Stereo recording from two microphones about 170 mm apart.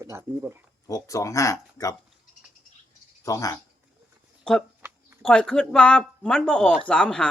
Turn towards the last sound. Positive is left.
turn(degrees=5)  # may be behind; listen again after turning